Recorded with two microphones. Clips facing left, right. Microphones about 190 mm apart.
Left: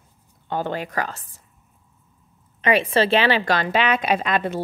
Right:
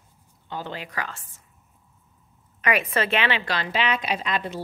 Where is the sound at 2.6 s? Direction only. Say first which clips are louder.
Left 5 dB; 30° left (ahead or behind).